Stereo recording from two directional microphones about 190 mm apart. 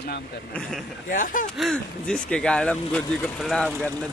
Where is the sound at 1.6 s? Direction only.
5° left (ahead or behind).